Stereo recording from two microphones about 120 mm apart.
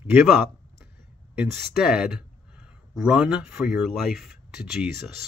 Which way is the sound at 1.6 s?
5° right (ahead or behind).